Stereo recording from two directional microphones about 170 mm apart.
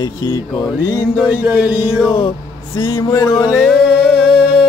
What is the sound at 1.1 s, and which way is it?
Music, 10° right (ahead or behind).